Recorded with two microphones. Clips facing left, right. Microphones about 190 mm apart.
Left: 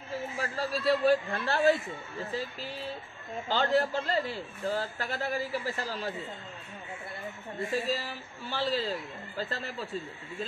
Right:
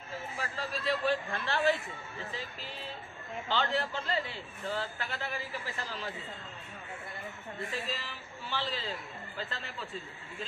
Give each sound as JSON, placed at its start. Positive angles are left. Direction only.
{"t": 0.4, "sound": "a man's voice", "side_deg": 40}
{"t": 3.4, "sound": "a man's voice", "side_deg": 40}
{"t": 7.7, "sound": "a man's voice", "side_deg": 40}